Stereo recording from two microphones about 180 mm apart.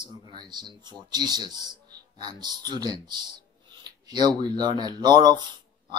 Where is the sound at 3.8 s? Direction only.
25° right (ahead or behind).